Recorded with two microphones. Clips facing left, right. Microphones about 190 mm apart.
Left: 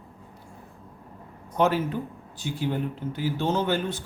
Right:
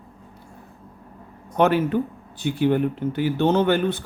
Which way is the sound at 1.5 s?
65° right (ahead or behind).